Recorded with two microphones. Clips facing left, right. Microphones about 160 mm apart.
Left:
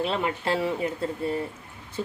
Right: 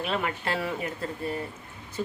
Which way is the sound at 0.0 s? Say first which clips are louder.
Left 3 dB; 25° left (ahead or behind).